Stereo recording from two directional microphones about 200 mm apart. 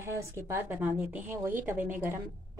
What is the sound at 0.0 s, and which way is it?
Speech, 15° right (ahead or behind).